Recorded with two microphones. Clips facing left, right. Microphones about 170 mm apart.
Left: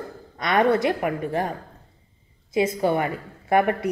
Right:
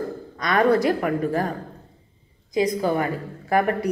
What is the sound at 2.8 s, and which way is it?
Speech, 25° left (ahead or behind).